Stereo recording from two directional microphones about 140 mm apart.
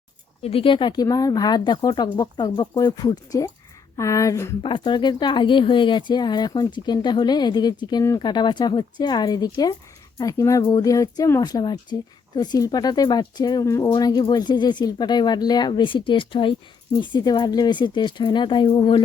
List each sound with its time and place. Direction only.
0.4 s speech: 40° left (ahead or behind); by 4.5 s 20° left (ahead or behind)
4.6 s speech: 35° left (ahead or behind)